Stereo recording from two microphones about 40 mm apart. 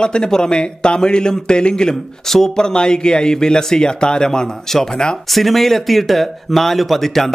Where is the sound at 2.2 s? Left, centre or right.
Centre.